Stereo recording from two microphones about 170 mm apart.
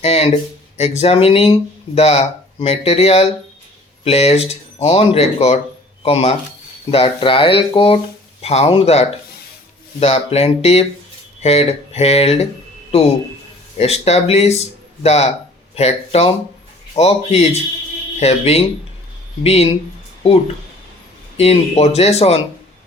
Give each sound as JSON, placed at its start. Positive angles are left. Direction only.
{"t": 0.0, "sound": "a sound", "side_deg": 35}
{"t": 0.8, "sound": "speech", "side_deg": 35}
{"t": 13.7, "sound": "speech", "side_deg": 40}
{"t": 21.3, "sound": "speech", "side_deg": 35}